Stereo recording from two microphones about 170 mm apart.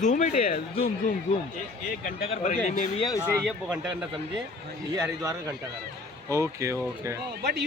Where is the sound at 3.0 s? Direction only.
20° left (ahead or behind).